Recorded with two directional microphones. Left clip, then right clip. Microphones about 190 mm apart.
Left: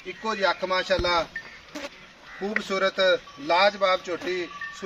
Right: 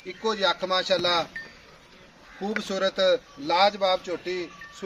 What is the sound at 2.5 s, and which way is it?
A man's voice, 25° right (ahead or behind).